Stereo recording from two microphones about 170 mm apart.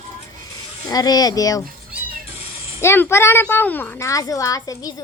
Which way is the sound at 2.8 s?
15° left (ahead or behind).